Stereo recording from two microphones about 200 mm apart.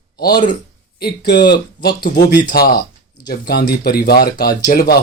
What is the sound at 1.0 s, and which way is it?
Speech, 55° left (ahead or behind).